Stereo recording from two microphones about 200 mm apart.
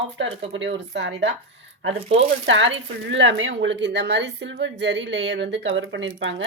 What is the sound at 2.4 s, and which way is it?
Speech, 65° right (ahead or behind).